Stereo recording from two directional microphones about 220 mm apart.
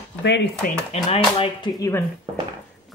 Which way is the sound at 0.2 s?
50° left (ahead or behind).